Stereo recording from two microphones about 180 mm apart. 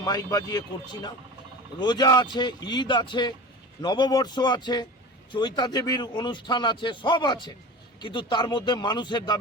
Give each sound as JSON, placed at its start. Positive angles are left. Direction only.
{"t": 0.0, "sound": "speech", "side_deg": 20}
{"t": 1.8, "sound": "speech", "side_deg": 25}